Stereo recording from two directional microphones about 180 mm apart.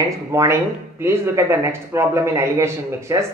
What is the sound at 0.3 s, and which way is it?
Speech, 15° right (ahead or behind).